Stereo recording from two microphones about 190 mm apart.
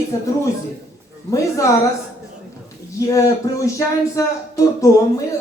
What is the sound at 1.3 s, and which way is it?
Speech, 15° left (ahead or behind).